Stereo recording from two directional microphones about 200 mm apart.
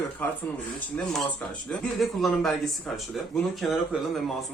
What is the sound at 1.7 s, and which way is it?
Speech, centre (ahead or behind).